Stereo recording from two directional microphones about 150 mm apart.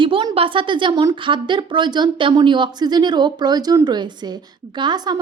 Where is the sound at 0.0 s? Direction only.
35° right (ahead or behind).